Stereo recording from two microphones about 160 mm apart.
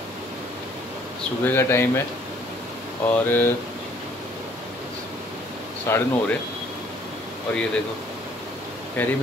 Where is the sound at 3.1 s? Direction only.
15° left (ahead or behind).